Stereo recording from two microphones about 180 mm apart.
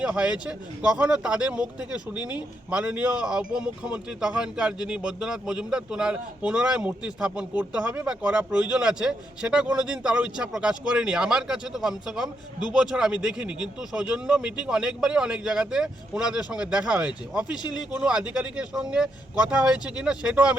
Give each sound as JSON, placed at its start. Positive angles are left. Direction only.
{"t": 0.0, "sound": "speech", "side_deg": -5}
{"t": 17.6, "sound": "speech", "side_deg": 25}
{"t": 17.9, "sound": "speech", "side_deg": -5}